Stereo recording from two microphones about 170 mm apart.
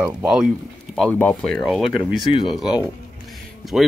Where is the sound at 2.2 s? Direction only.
30° left (ahead or behind).